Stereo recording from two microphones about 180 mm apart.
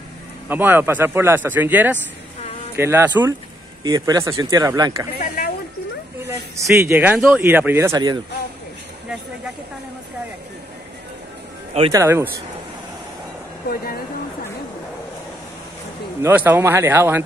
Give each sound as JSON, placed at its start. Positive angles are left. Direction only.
{"t": 0.5, "sound": "speech", "side_deg": -10}
{"t": 5.2, "sound": "a sound", "side_deg": 55}
{"t": 6.2, "sound": "speech", "side_deg": -15}
{"t": 11.9, "sound": "speech", "side_deg": -15}
{"t": 16.2, "sound": "speech", "side_deg": -10}